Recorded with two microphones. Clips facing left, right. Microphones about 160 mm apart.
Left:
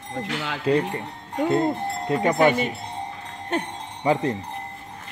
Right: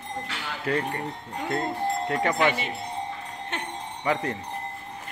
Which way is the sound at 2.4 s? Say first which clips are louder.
Left 5 dB; 45° left (ahead or behind).